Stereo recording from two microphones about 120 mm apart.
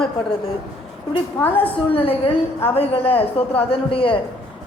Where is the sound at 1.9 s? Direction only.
50° left (ahead or behind).